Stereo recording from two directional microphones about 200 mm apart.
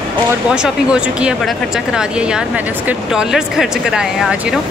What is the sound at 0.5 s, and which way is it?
A woman's voice, 5° right (ahead or behind).